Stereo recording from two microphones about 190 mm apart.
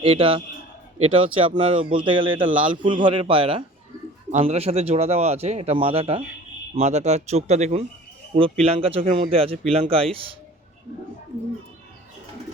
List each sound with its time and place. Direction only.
0.0 s a man's voice: 30° right (ahead or behind)